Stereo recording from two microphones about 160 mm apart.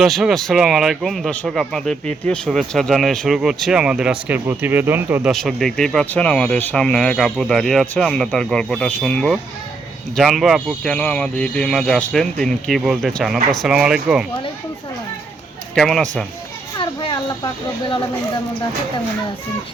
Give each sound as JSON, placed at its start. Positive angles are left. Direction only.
{"t": 0.0, "sound": "a man's voice", "side_deg": 0}
{"t": 5.3, "sound": "a man's voice", "side_deg": 0}
{"t": 15.7, "sound": "a man's voice", "side_deg": 0}
{"t": 16.7, "sound": "a child's voice", "side_deg": 30}